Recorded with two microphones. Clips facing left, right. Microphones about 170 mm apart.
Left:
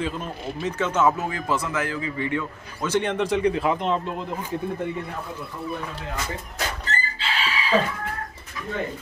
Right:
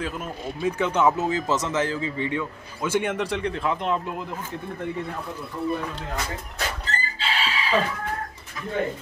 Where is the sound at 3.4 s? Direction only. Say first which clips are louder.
Left 4 dB; 10° left (ahead or behind).